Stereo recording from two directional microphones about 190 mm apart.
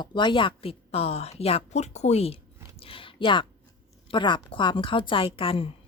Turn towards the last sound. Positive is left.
turn(degrees=30)  # may be behind; listen again after turning